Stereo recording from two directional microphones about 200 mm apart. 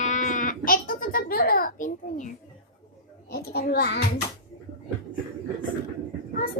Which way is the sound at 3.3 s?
50° left (ahead or behind).